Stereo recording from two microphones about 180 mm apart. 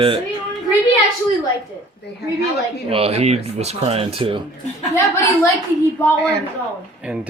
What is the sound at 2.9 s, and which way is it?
A man's voice, 35° right (ahead or behind).